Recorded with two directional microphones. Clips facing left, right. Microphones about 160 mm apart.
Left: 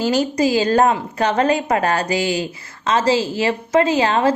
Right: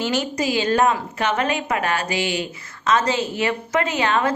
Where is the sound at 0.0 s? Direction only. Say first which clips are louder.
Left 5 dB; 35° left (ahead or behind).